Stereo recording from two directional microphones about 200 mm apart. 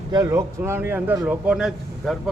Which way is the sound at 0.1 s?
15° right (ahead or behind).